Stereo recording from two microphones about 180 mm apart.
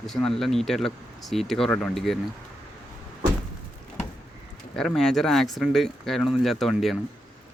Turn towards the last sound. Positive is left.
turn(degrees=0)  # may be behind; listen again after turning